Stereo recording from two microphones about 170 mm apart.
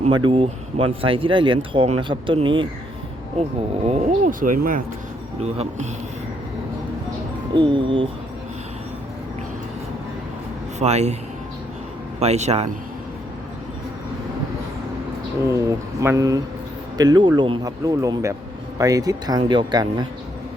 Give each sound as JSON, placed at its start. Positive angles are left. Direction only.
{"t": 0.1, "sound": "speech", "side_deg": -30}
{"t": 3.8, "sound": "speech", "side_deg": -40}
{"t": 5.4, "sound": "speech", "side_deg": -40}
{"t": 7.5, "sound": "speech", "side_deg": -30}
{"t": 10.8, "sound": "speech", "side_deg": -40}
{"t": 12.2, "sound": "speech", "side_deg": -40}
{"t": 15.5, "sound": "speech", "side_deg": -20}